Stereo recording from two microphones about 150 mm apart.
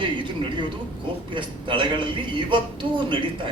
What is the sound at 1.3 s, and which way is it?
A man's voice, 35° right (ahead or behind).